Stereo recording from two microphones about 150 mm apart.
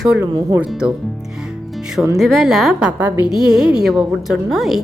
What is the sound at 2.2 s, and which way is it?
A woman's voice, centre (ahead or behind).